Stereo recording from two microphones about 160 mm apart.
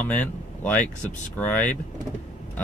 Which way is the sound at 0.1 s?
10° left (ahead or behind).